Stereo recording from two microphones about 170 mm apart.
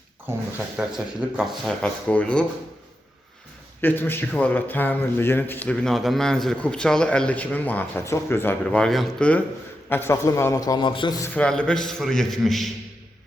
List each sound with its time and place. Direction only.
0.8 s speech: 5° right (ahead or behind)
3.8 s speech: 10° left (ahead or behind)
9.9 s a man's voice: 15° left (ahead or behind)
11.3 s speech: 5° left (ahead or behind)